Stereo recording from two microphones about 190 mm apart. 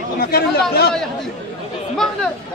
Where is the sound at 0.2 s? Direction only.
55° left (ahead or behind).